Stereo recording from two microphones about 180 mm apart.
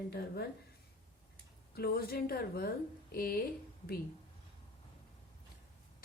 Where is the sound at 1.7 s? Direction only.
60° left (ahead or behind).